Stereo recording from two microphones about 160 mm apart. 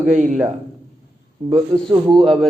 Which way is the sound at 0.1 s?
50° right (ahead or behind).